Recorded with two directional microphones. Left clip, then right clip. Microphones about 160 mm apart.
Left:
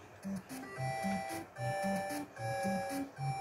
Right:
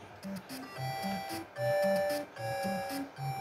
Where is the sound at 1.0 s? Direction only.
15° right (ahead or behind).